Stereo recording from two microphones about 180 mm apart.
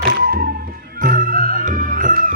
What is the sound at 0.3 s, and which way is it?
Music, 55° right (ahead or behind).